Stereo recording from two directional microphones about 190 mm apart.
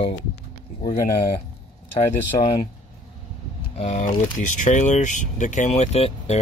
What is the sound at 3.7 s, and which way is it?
Speech, 35° left (ahead or behind).